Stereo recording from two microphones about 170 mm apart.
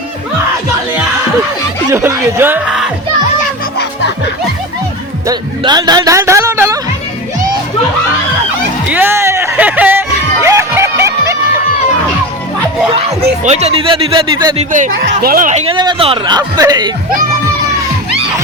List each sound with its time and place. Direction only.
1.9 s speech: 15° right (ahead or behind)
5.2 s speech: 25° right (ahead or behind)
8.9 s a sound: 10° right (ahead or behind)
10.4 s music: 15° right (ahead or behind)
13.4 s speech: 40° right (ahead or behind)
14.6 s speech: 50° right (ahead or behind)
14.9 s speech: 60° right (ahead or behind)
15.6 s speech: 25° right (ahead or behind)